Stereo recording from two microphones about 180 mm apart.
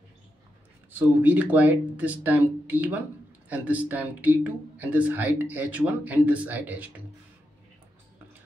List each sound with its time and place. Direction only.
0.9 s speech: 10° right (ahead or behind)